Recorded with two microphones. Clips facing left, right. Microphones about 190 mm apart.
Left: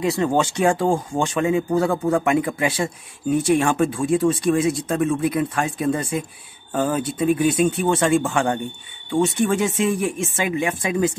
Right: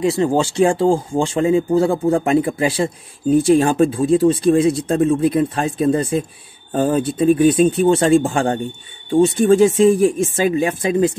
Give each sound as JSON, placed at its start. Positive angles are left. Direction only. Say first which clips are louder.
{"t": 0.0, "sound": "a man's voice", "louder": "right 3 dB", "side_deg": -25}